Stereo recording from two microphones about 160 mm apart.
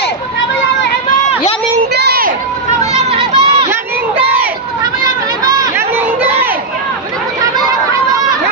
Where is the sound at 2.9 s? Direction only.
40° right (ahead or behind).